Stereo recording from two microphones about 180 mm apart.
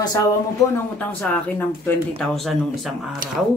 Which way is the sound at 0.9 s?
10° left (ahead or behind).